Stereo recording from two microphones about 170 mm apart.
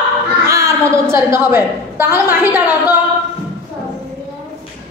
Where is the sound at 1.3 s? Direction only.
15° right (ahead or behind).